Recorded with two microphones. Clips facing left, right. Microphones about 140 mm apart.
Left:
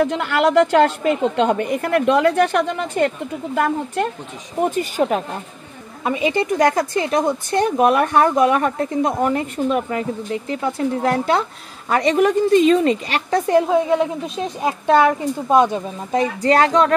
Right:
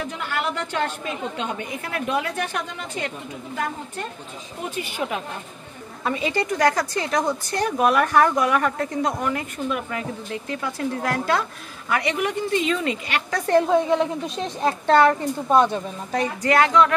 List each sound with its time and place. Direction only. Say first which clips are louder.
0.0 s a woman's voice: left 10 dB; 65° left (ahead or behind)
4.6 s speech: left 10 dB; 45° left (ahead or behind)
6.0 s speech: left 5 dB; 15° left (ahead or behind)
11.9 s a woman's voice: left 8 dB; 35° left (ahead or behind)
13.5 s a woman's voice: left 1 dB; 10° left (ahead or behind); by 16.9 s 35° left (ahead or behind)